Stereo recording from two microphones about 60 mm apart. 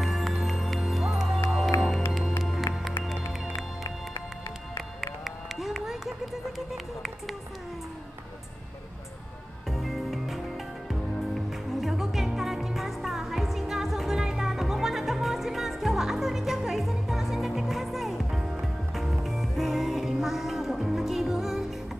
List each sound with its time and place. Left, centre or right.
0.0 s music: centre
2.7 s music: left
5.2 s run: centre
9.7 s music: centre
11.8 s music: centre